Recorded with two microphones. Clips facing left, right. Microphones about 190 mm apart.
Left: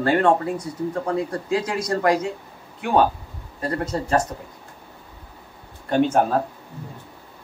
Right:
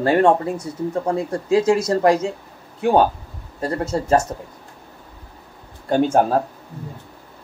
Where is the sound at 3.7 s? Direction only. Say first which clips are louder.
Right 3 dB; 25° right (ahead or behind).